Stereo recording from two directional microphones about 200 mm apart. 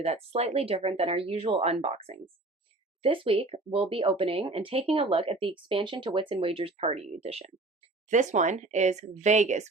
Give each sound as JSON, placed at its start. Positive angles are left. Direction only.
{"t": 0.0, "sound": "speech", "side_deg": -30}
{"t": 3.2, "sound": "speech", "side_deg": -30}